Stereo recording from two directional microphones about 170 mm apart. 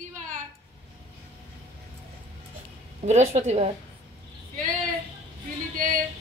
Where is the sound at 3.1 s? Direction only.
40° right (ahead or behind).